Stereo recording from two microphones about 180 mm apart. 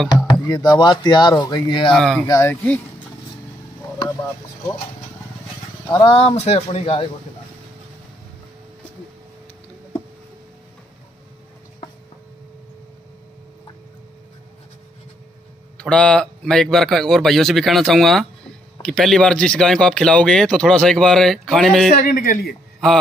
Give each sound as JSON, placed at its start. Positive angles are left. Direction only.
{"t": 0.3, "sound": "speech", "side_deg": 25}
{"t": 1.9, "sound": "speech", "side_deg": 5}
{"t": 2.2, "sound": "speech", "side_deg": 15}
{"t": 5.9, "sound": "speech", "side_deg": 25}
{"t": 15.8, "sound": "speech", "side_deg": 5}
{"t": 22.0, "sound": "a man's voice", "side_deg": 50}